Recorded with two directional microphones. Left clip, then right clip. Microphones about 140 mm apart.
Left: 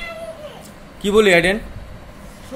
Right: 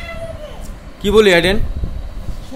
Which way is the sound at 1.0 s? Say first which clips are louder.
Right 3 dB; 5° right (ahead or behind).